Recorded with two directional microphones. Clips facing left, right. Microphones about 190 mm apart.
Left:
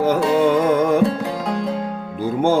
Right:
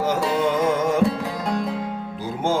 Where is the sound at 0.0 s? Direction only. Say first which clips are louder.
Left 5 dB; 55° left (ahead or behind).